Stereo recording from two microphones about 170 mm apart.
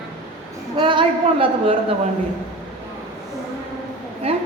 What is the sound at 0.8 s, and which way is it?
Speech, 30° right (ahead or behind).